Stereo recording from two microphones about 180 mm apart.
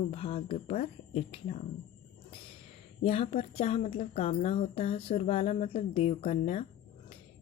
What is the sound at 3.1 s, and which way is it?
A woman's voice, 30° left (ahead or behind).